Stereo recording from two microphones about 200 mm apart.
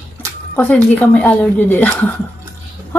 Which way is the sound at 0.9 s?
10° left (ahead or behind).